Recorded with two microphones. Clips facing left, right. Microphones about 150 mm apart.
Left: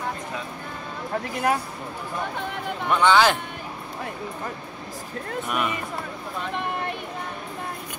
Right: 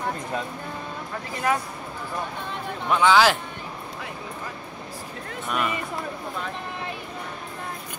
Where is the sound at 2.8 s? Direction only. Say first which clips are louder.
Even; centre (ahead or behind).